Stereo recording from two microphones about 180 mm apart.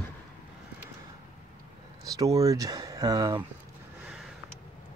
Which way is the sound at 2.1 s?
20° right (ahead or behind).